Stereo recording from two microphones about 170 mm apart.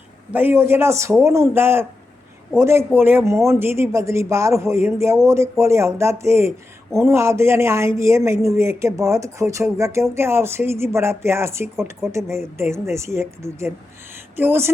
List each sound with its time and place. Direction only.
0.3 s speech: 15° right (ahead or behind)